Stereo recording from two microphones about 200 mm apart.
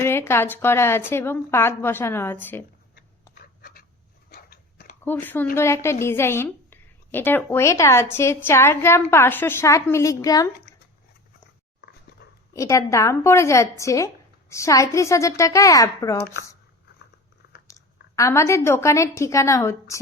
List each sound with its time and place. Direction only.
0.0 s a woman's voice: 10° left (ahead or behind)
3.3 s writing: 50° left (ahead or behind)
4.3 s biting: 50° left (ahead or behind)
5.0 s a woman's voice: 10° left (ahead or behind)
12.2 s dog: 50° left (ahead or behind)
12.5 s a woman's voice: 15° left (ahead or behind)
17.7 s a woman's voice: 15° left (ahead or behind)